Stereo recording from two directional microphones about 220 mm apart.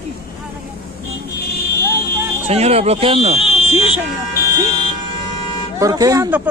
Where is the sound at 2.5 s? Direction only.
30° right (ahead or behind).